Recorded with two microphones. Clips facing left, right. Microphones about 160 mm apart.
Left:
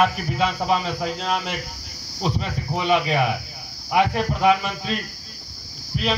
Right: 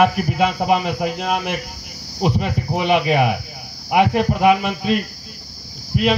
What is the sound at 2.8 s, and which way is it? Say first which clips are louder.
Speech: right 3 dB; 15° right (ahead or behind).